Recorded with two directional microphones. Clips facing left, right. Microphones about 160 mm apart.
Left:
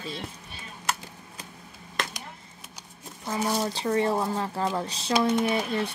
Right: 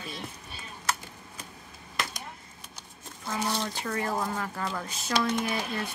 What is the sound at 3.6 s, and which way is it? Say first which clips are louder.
Speech: left 7 dB; 30° left (ahead or behind).